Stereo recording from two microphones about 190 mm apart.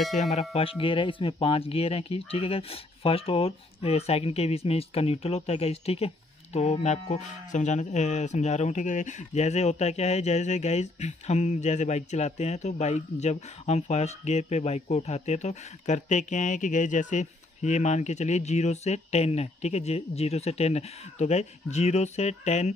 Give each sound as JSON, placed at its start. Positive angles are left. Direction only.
{"t": 0.2, "sound": "speech", "side_deg": 35}